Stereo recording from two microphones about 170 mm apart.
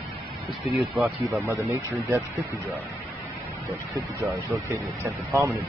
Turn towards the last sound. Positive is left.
turn(degrees=-15)  # may be behind; listen again after turning